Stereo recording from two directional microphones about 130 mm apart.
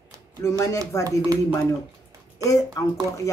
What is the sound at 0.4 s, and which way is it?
Speech, 25° left (ahead or behind).